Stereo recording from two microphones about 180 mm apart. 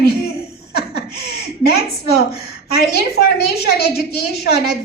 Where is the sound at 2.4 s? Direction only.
60° left (ahead or behind).